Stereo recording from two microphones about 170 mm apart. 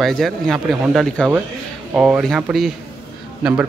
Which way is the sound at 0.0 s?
Centre (ahead or behind).